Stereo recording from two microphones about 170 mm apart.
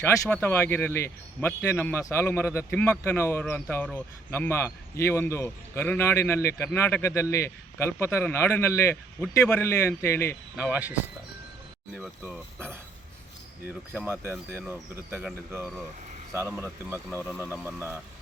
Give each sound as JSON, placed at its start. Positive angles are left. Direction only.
{"t": 0.0, "sound": "speech", "side_deg": 10}
{"t": 10.6, "sound": "speech", "side_deg": -10}
{"t": 11.9, "sound": "speech", "side_deg": 0}
{"t": 13.9, "sound": "speech", "side_deg": 0}
{"t": 15.1, "sound": "speech", "side_deg": -10}